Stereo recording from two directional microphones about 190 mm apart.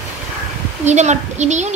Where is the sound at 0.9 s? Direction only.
35° right (ahead or behind).